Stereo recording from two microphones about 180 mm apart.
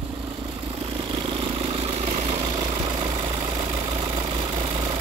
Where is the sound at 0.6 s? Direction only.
30° right (ahead or behind).